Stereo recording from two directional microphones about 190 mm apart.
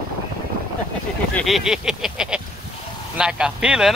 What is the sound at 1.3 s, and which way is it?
Speech, centre (ahead or behind).